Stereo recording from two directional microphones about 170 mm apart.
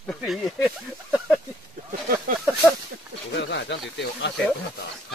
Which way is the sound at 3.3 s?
90° left.